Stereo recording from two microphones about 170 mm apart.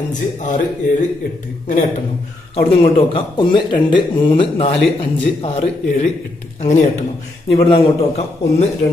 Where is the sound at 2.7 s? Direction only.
30° left (ahead or behind).